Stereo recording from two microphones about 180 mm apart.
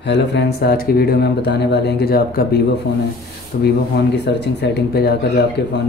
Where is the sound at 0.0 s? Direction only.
70° left (ahead or behind).